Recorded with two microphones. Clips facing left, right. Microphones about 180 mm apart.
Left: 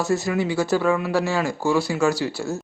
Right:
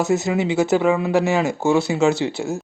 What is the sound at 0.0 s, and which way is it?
Speech, 20° right (ahead or behind).